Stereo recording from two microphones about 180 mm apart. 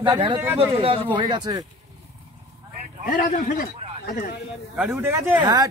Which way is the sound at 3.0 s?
50° left (ahead or behind).